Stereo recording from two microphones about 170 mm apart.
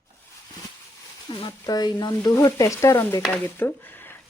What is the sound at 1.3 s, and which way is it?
Speech, 25° left (ahead or behind).